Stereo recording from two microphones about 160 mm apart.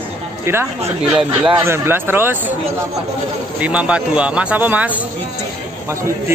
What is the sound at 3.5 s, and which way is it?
Speech, 10° right (ahead or behind).